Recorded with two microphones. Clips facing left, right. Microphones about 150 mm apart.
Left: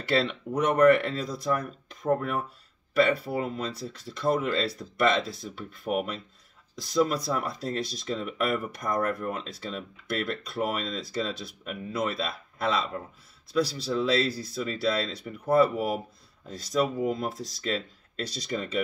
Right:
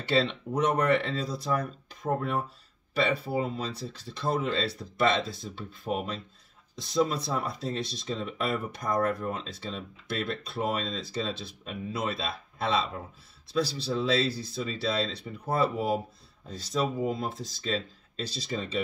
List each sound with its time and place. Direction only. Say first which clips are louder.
0.5 s speech: left 1 dB; 20° left (ahead or behind)
0.8 s speech: left 6 dB; 25° right (ahead or behind)
2.9 s a sound: left 4 dB; 25° right (ahead or behind)
3.5 s speech: left 1 dB; 25° right (ahead or behind)